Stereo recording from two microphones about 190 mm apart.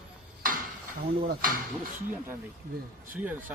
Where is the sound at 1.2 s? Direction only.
50° right (ahead or behind).